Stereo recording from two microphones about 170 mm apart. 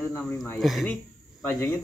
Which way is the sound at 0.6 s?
Centre (ahead or behind).